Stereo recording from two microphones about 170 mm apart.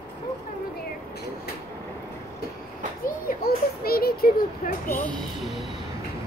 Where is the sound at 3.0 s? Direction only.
65° left (ahead or behind).